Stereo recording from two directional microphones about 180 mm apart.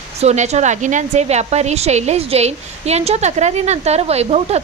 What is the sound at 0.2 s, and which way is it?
A woman's voice, 40° right (ahead or behind).